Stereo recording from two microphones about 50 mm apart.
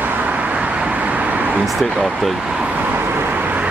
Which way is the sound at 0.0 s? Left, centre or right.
Right.